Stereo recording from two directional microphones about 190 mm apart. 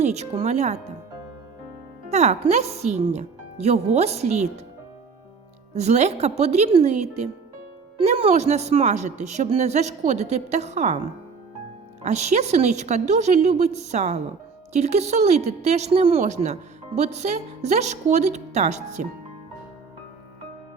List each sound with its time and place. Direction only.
0.0 s speech: 35° right (ahead or behind)
2.0 s speech: 35° right (ahead or behind)
5.7 s speech: 35° right (ahead or behind)
12.0 s speech: 35° right (ahead or behind)